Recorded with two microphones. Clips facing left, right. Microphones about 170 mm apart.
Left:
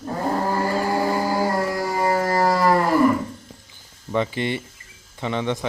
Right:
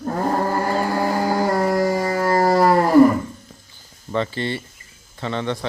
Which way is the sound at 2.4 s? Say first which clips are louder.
Right 4 dB; 50° right (ahead or behind).